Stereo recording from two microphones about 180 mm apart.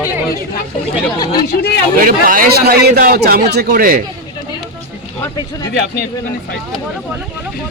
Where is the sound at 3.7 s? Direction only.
50° right (ahead or behind).